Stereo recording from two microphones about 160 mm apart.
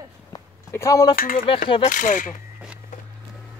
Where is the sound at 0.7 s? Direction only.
20° left (ahead or behind).